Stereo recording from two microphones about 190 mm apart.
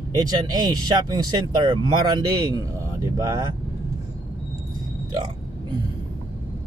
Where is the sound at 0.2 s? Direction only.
20° right (ahead or behind).